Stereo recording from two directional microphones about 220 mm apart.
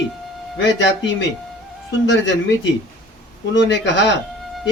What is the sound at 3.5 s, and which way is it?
Speech, 55° left (ahead or behind).